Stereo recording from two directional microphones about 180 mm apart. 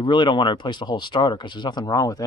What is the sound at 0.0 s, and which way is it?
Speech, 25° left (ahead or behind).